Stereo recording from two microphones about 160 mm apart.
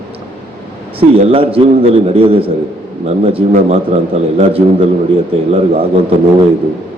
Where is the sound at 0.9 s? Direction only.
35° right (ahead or behind).